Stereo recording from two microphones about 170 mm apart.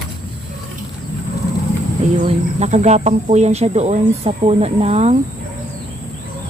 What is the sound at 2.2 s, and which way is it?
Speech, 40° right (ahead or behind).